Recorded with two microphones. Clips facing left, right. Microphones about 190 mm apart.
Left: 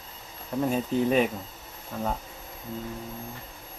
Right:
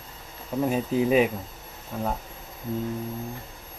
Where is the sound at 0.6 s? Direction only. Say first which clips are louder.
Right 1 dB; 5° right (ahead or behind).